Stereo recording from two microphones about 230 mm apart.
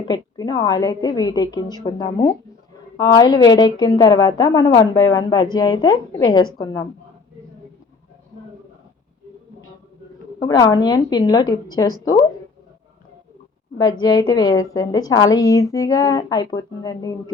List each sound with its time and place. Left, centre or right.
0.1 s speech: centre
10.4 s speech: centre
14.0 s speech: centre